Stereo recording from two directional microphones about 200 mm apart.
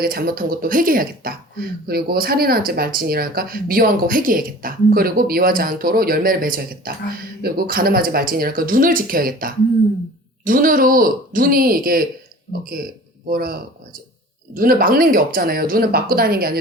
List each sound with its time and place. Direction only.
0.0 s speech: 50° right (ahead or behind)
13.2 s speech: 45° right (ahead or behind)